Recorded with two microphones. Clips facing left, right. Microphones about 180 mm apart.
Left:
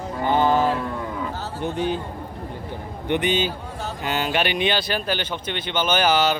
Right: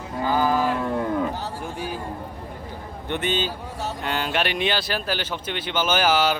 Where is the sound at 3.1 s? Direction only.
15° left (ahead or behind); by 6.4 s 5° right (ahead or behind).